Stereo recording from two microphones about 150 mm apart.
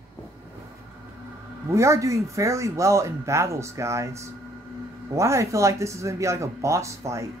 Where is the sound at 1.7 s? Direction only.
20° right (ahead or behind).